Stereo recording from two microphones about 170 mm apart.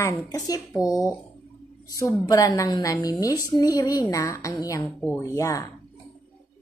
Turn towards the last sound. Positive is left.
turn(degrees=20)  # may be behind; listen again after turning